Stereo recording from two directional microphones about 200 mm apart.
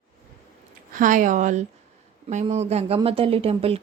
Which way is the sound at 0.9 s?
40° right (ahead or behind).